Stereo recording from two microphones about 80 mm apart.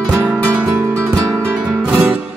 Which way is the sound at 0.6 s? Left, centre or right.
Right.